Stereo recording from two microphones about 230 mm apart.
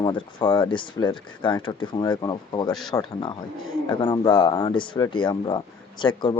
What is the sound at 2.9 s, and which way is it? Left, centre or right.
Speech, centre.